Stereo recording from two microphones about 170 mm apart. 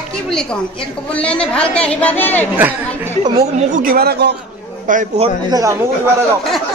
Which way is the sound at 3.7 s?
55° right (ahead or behind).